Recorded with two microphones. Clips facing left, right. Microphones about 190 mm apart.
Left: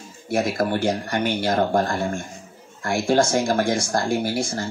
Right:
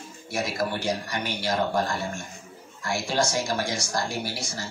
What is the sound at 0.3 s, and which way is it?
Speech, 55° left (ahead or behind).